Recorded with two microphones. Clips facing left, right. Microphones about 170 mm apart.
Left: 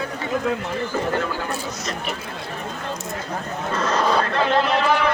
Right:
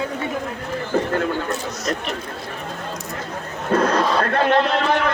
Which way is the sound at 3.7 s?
55° right (ahead or behind).